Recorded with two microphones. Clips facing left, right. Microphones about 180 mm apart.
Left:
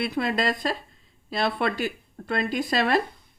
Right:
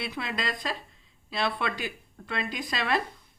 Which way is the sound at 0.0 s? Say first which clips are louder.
Left 8 dB; 40° left (ahead or behind).